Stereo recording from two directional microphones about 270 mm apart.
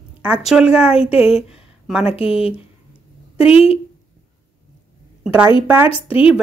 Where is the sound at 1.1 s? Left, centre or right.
Left.